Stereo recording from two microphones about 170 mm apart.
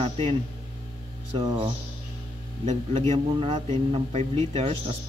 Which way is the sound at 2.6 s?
40° right (ahead or behind).